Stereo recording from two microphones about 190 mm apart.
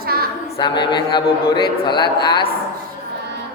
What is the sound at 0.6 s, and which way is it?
A man's voice, 25° left (ahead or behind).